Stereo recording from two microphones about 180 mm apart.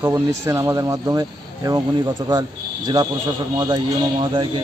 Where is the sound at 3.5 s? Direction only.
20° right (ahead or behind).